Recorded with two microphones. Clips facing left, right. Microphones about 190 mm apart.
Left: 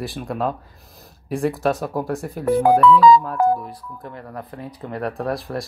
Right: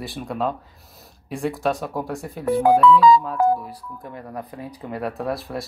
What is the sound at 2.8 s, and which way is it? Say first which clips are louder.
Speech: left 1 dB; 55° left (ahead or behind).